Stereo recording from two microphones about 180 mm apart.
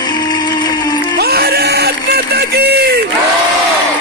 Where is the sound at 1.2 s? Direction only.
60° right (ahead or behind).